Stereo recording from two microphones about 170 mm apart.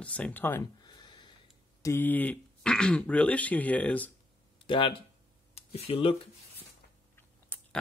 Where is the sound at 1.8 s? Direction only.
10° left (ahead or behind).